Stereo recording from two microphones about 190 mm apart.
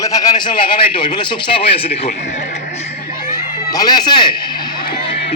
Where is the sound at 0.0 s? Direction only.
20° left (ahead or behind).